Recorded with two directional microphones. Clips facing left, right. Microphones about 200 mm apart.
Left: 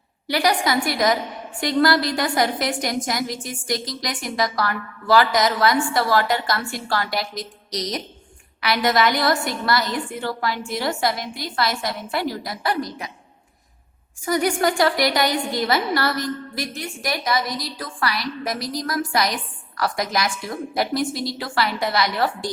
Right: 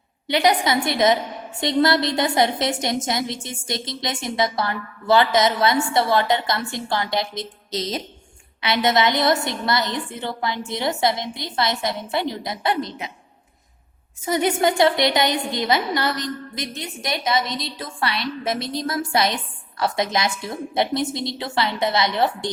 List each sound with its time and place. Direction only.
0.3 s a woman's voice: 20° right (ahead or behind)
14.2 s a woman's voice: 25° right (ahead or behind)